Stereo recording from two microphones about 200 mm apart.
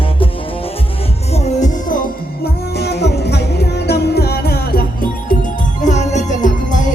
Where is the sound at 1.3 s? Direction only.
35° left (ahead or behind).